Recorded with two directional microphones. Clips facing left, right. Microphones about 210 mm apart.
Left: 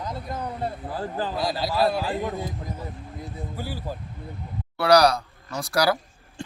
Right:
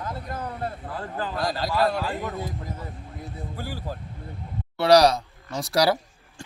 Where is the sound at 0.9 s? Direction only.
35° left (ahead or behind).